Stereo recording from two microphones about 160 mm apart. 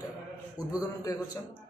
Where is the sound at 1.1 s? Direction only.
25° left (ahead or behind).